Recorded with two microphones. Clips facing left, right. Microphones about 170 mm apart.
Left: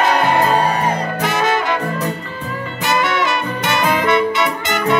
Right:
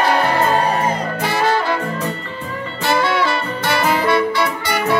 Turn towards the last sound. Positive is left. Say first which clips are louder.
# even
turn(degrees=20)  # may be behind; listen again after turning